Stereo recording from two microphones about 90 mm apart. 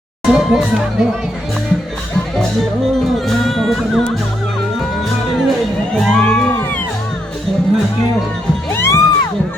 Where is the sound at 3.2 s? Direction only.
Centre (ahead or behind).